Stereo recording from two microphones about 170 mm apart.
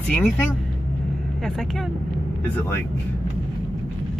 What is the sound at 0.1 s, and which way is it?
Speech, 10° left (ahead or behind).